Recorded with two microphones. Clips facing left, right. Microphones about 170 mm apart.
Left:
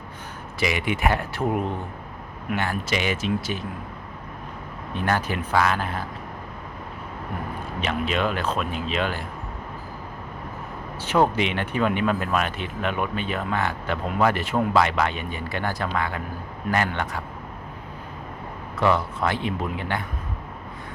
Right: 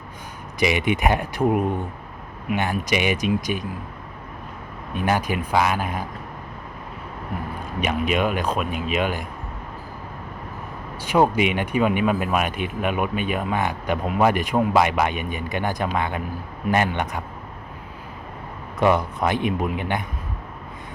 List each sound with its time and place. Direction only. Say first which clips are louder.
0.6 s speech: right 3 dB; 20° right (ahead or behind)
4.9 s speech: right 2 dB; 15° right (ahead or behind)
7.8 s speech: right 3 dB; 15° right (ahead or behind)
11.0 s speech: right 2 dB; 10° right (ahead or behind)
18.8 s speech: right 2 dB; 15° right (ahead or behind)